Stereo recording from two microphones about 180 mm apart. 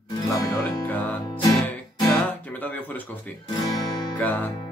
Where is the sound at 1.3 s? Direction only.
10° left (ahead or behind).